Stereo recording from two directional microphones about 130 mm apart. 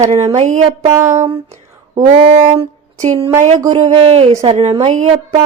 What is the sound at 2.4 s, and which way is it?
Speech, 50° right (ahead or behind).